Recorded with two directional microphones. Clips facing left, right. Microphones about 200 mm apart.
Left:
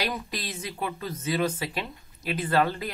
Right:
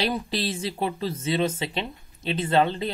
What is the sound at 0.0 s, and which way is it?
Speech, 30° right (ahead or behind).